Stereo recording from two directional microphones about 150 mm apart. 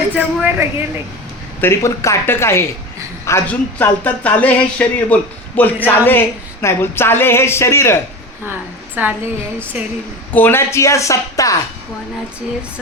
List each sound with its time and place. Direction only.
0.2 s a woman's voice: 15° right (ahead or behind)
1.6 s speech: 20° left (ahead or behind)
9.0 s a woman's voice: 10° right (ahead or behind)
10.3 s speech: 15° left (ahead or behind)